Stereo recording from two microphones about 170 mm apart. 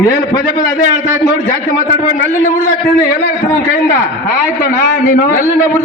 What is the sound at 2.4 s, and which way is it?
Speech, 50° left (ahead or behind).